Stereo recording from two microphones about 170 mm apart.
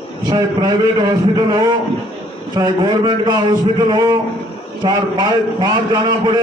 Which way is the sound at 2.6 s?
25° right (ahead or behind).